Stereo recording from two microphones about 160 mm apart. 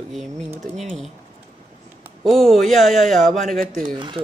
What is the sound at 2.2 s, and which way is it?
Speech, centre (ahead or behind).